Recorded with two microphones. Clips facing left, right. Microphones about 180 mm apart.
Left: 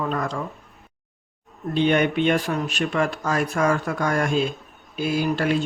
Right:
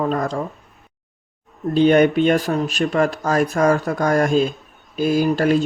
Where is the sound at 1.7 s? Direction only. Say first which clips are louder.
Right 6 dB; 40° right (ahead or behind).